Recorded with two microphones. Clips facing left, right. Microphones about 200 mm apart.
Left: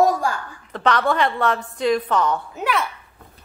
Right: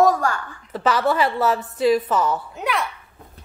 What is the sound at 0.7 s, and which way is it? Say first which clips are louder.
A woman's voice: even; 5° right (ahead or behind).